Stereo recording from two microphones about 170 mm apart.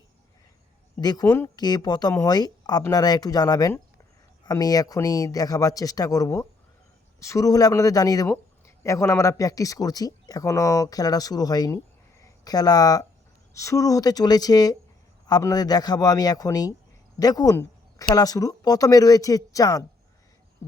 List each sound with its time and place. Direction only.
1.0 s speech: 20° left (ahead or behind)